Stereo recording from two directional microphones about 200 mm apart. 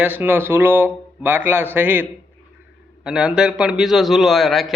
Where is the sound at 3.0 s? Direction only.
5° right (ahead or behind).